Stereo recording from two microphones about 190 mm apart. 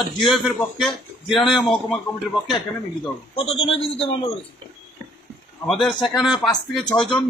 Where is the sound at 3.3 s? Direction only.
30° left (ahead or behind).